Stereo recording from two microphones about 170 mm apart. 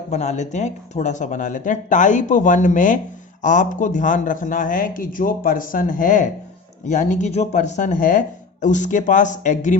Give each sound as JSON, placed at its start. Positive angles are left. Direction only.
{"t": 0.1, "sound": "a man's voice", "side_deg": 40}